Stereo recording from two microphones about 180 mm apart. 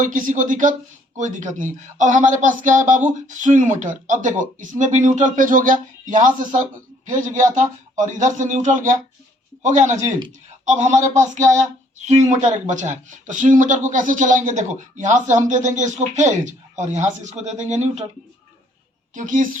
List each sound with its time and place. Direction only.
0.0 s speech: 45° right (ahead or behind)
19.1 s speech: 45° right (ahead or behind)